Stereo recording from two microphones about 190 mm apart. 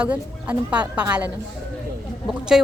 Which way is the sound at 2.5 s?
5° right (ahead or behind).